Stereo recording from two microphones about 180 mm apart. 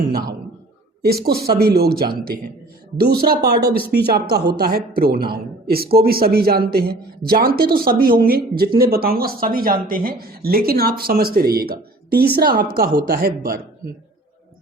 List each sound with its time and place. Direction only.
1.0 s a woman's voice: 60° right (ahead or behind)